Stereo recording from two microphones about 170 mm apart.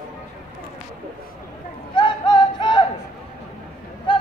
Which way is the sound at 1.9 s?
25° left (ahead or behind).